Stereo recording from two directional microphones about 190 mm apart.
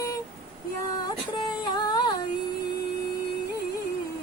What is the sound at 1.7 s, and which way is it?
Music, 20° left (ahead or behind).